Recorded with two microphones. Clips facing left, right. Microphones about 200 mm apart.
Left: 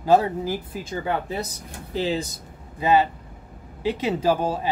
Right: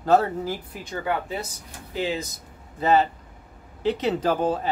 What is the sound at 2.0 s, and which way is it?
Speech, 35° left (ahead or behind).